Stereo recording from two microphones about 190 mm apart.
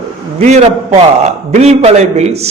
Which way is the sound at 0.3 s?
35° right (ahead or behind).